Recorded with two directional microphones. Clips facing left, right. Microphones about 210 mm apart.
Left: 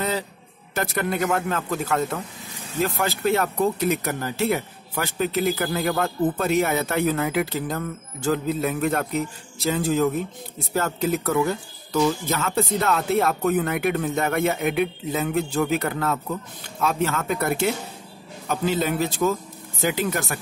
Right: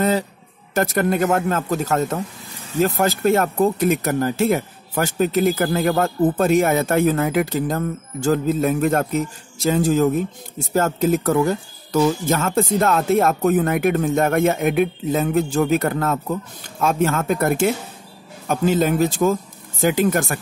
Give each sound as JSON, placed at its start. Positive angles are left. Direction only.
{"t": 0.7, "sound": "speech", "side_deg": -45}